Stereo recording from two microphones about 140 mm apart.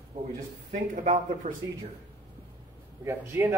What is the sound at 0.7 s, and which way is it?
Speech, 65° right (ahead or behind).